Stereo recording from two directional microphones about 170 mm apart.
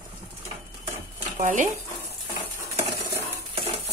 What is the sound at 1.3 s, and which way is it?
Speech, 45° right (ahead or behind).